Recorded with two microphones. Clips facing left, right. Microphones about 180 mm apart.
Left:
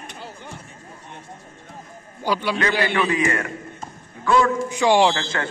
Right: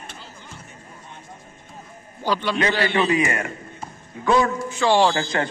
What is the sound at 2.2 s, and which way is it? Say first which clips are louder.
Speech: even; 10° left (ahead or behind).